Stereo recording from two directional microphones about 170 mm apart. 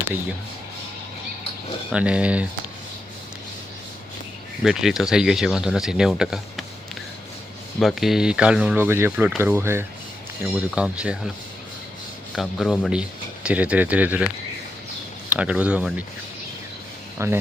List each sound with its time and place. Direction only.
1.9 s speech: 5° right (ahead or behind)
4.6 s speech: centre (ahead or behind)
7.8 s speech: centre (ahead or behind)
10.4 s speech: centre (ahead or behind)
12.4 s speech: centre (ahead or behind)
15.3 s speech: 5° right (ahead or behind)
17.2 s speech: 15° right (ahead or behind)